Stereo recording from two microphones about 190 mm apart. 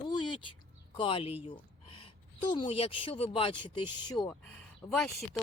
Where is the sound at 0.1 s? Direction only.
25° left (ahead or behind).